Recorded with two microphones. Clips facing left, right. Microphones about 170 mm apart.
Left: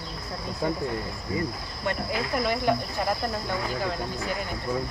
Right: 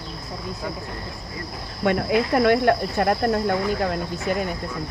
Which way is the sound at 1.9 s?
70° right (ahead or behind).